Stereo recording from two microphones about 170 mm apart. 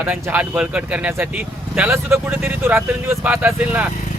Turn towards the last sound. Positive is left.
turn(degrees=-10)  # may be behind; listen again after turning